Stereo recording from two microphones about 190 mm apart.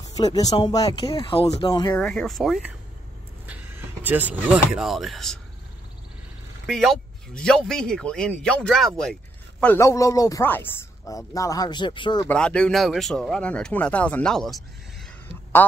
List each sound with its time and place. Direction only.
0.0 s a sound: 20° left (ahead or behind)
0.5 s speech: 25° left (ahead or behind)
2.0 s speech: 5° left (ahead or behind)
4.0 s speech: 10° right (ahead or behind)
6.6 s a man's voice: centre (ahead or behind); by 12.3 s 25° left (ahead or behind)
12.3 s speech: 5° left (ahead or behind)